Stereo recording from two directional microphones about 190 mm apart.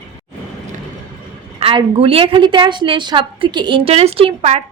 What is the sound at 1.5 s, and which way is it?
A woman's voice, 30° right (ahead or behind).